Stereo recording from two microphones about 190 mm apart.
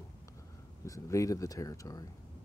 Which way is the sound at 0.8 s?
15° left (ahead or behind).